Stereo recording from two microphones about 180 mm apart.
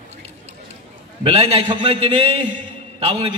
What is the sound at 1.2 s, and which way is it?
A man's voice, 35° right (ahead or behind).